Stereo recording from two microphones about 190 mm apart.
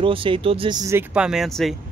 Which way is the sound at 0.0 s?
25° right (ahead or behind).